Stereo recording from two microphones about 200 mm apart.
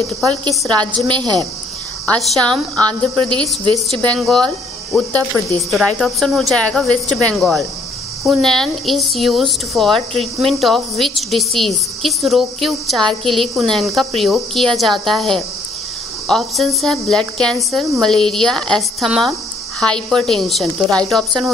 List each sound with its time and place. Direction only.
0.5 s a woman's voice: 20° right (ahead or behind)
2.0 s a woman's voice: 5° left (ahead or behind)
3.3 s a woman's voice: 25° right (ahead or behind)
3.9 s a woman's voice: 5° left (ahead or behind)